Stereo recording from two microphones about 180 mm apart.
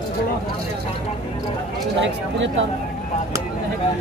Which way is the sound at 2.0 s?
90° right.